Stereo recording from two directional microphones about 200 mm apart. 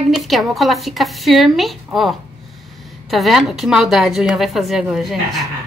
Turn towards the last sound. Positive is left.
turn(degrees=0)  # may be behind; listen again after turning